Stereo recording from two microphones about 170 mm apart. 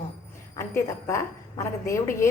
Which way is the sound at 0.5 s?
15° left (ahead or behind).